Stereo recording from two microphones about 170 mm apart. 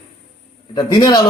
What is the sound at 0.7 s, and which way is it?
Speech, 20° left (ahead or behind).